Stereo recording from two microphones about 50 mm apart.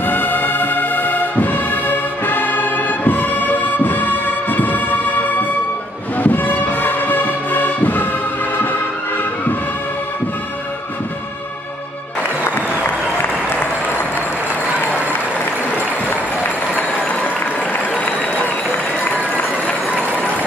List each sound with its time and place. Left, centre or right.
0.0 s music: left